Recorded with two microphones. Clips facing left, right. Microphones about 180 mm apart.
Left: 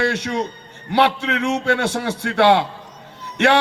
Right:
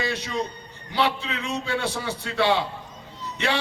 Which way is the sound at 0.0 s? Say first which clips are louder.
Left 6 dB; 75° left (ahead or behind).